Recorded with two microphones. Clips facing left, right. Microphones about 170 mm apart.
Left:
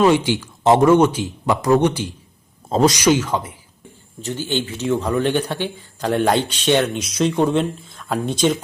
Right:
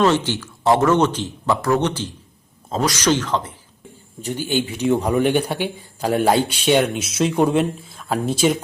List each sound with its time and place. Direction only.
0.0 s a man's voice: 10° left (ahead or behind)
0.9 s speech: 10° left (ahead or behind)
4.2 s speech: 15° right (ahead or behind)